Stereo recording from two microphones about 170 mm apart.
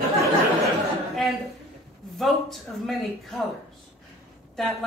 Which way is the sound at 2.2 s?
Centre (ahead or behind).